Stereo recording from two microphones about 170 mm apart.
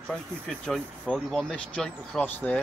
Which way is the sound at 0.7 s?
5° left (ahead or behind).